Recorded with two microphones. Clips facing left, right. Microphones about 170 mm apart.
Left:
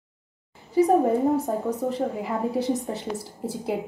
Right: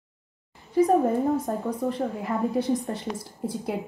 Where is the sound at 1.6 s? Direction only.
Centre (ahead or behind).